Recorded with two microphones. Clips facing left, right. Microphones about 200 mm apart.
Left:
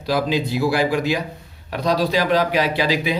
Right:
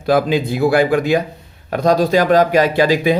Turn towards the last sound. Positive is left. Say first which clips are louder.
# right 7 dB
turn(degrees=-50)  # may be behind; listen again after turning